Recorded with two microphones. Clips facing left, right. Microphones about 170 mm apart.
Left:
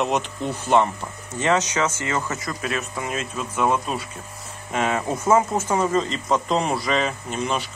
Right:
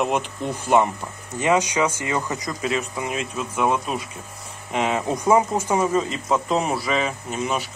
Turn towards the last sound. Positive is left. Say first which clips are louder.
# even
turn(degrees=-10)  # may be behind; listen again after turning